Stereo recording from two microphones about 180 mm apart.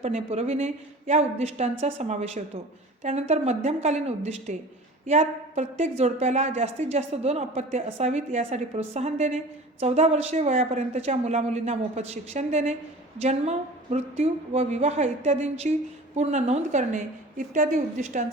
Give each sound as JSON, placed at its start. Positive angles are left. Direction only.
{"t": 0.0, "sound": "a woman's voice", "side_deg": -35}